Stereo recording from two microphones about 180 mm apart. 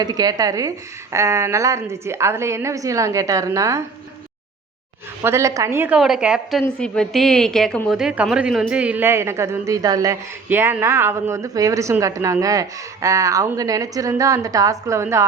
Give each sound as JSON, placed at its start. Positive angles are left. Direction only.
{"t": 0.0, "sound": "a woman's voice", "side_deg": -20}
{"t": 5.2, "sound": "a woman's voice", "side_deg": -15}